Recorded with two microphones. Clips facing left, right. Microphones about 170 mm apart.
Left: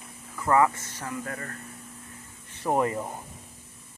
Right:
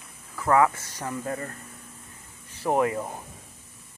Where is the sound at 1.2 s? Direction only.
25° right (ahead or behind).